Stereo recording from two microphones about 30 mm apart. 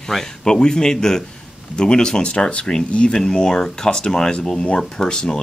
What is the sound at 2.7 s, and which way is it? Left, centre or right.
Speech, left.